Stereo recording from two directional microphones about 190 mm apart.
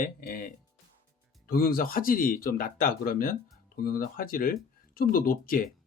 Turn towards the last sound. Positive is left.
turn(degrees=50)  # may be behind; listen again after turning